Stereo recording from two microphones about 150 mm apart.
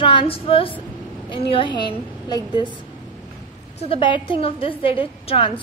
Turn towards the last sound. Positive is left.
turn(degrees=40)  # may be behind; listen again after turning